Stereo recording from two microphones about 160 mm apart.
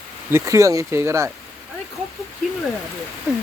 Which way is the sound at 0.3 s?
15° right (ahead or behind).